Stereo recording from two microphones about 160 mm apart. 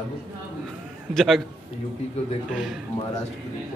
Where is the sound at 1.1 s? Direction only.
Centre (ahead or behind).